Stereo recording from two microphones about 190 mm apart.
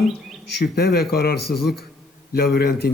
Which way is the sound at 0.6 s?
55° left (ahead or behind).